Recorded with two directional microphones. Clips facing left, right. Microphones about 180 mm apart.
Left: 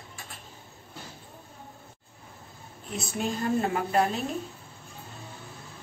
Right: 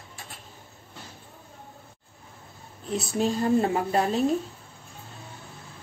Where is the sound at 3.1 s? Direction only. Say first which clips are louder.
Right 5 dB; 30° right (ahead or behind).